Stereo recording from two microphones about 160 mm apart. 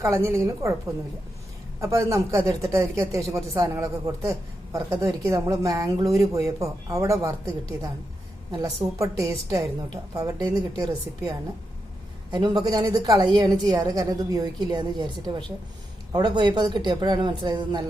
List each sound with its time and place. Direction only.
0.0 s a man's voice: 15° right (ahead or behind)
1.8 s a man's voice: 20° right (ahead or behind)
12.3 s a man's voice: 25° right (ahead or behind)